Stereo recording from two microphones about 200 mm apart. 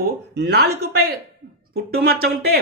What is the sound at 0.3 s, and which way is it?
Speech, 55° right (ahead or behind).